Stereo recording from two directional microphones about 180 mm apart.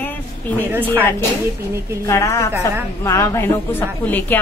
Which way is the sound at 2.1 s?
15° left (ahead or behind).